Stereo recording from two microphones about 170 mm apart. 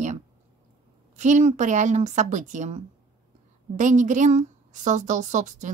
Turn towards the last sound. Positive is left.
turn(degrees=-45)  # may be behind; listen again after turning